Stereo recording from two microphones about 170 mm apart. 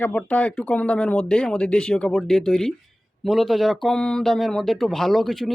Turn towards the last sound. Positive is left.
turn(degrees=0)  # may be behind; listen again after turning